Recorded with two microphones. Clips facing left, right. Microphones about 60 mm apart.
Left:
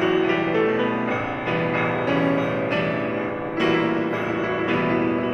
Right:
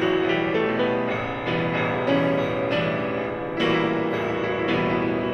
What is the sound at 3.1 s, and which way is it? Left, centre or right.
Music, centre.